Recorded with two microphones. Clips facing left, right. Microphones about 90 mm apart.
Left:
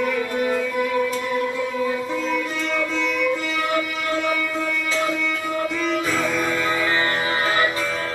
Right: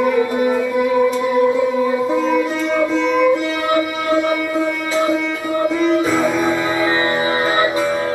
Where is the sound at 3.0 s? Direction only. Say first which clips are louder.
Right 8 dB; 35° right (ahead or behind).